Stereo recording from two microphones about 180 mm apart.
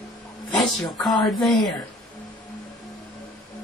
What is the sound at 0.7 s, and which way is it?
Speech, centre (ahead or behind).